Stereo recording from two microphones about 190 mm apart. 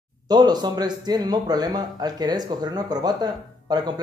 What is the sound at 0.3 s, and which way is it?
Speech, 20° right (ahead or behind).